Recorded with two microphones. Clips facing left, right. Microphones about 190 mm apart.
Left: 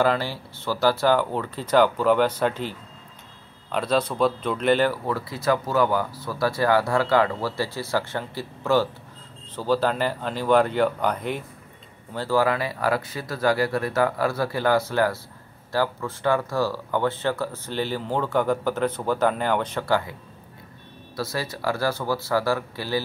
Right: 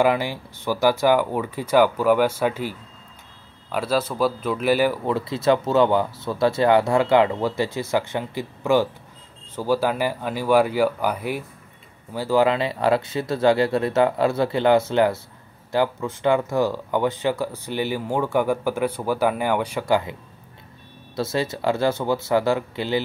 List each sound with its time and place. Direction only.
0.0 s speech: 15° right (ahead or behind)
3.7 s speech: 5° right (ahead or behind)
21.2 s speech: 25° right (ahead or behind)